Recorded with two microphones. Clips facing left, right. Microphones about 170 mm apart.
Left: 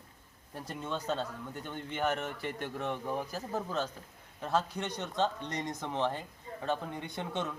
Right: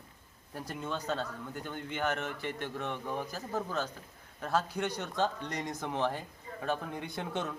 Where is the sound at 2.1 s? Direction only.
35° left (ahead or behind).